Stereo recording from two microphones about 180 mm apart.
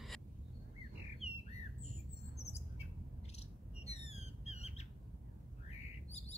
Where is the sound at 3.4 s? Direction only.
35° left (ahead or behind).